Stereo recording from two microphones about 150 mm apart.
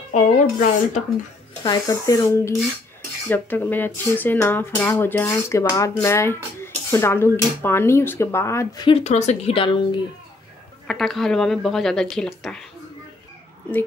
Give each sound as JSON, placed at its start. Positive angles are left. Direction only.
{"t": 0.1, "sound": "speech", "side_deg": 55}
{"t": 1.6, "sound": "speech", "side_deg": 25}
{"t": 8.8, "sound": "speech", "side_deg": 45}
{"t": 9.6, "sound": "speech", "side_deg": 35}
{"t": 10.9, "sound": "speech", "side_deg": 0}